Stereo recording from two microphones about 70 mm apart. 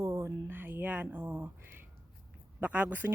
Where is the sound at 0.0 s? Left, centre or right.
Right.